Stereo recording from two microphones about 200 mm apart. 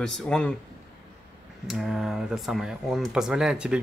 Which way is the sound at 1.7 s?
Centre (ahead or behind).